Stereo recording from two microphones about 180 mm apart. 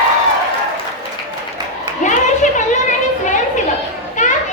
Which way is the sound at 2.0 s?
40° left (ahead or behind).